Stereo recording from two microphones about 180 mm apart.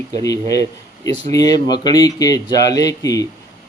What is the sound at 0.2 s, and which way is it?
A man's voice, 20° left (ahead or behind).